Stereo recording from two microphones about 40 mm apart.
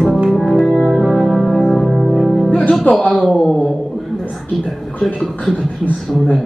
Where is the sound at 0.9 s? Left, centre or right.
Centre.